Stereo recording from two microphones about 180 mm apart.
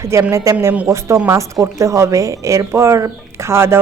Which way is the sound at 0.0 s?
15° right (ahead or behind).